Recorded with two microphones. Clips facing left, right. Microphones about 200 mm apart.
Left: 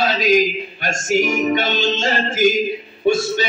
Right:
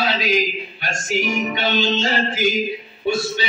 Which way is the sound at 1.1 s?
45° left (ahead or behind).